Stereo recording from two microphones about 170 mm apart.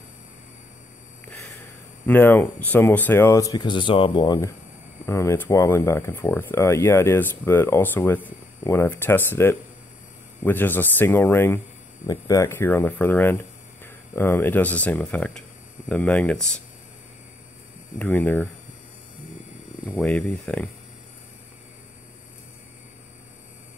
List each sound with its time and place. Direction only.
2.0 s speech: 10° left (ahead or behind)
5.0 s speech: 15° left (ahead or behind)
17.9 s speech: 5° left (ahead or behind)
20.0 s speech: 5° left (ahead or behind)